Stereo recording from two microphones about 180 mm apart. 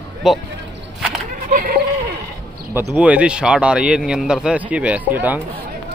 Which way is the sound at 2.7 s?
10° right (ahead or behind).